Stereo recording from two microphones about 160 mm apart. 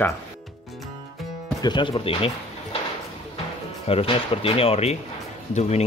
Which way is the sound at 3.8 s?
35° left (ahead or behind).